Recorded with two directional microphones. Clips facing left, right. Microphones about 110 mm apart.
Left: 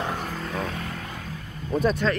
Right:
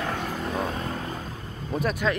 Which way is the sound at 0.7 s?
30° right (ahead or behind).